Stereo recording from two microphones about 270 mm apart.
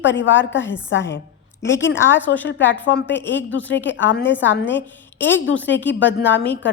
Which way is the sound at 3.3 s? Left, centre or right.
Left.